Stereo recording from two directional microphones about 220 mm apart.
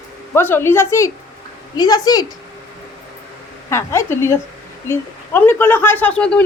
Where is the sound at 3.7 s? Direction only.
10° left (ahead or behind).